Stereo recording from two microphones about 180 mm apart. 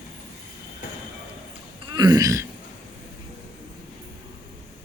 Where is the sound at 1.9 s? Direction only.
20° right (ahead or behind).